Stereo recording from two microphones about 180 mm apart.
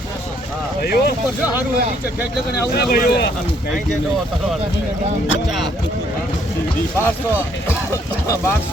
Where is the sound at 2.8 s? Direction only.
55° left (ahead or behind).